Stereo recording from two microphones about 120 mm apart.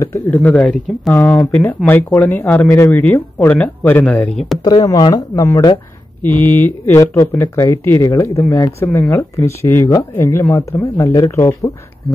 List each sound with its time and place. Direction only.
0.3 s speech: 15° left (ahead or behind)
4.6 s speech: 35° left (ahead or behind)
6.2 s speech: 20° left (ahead or behind)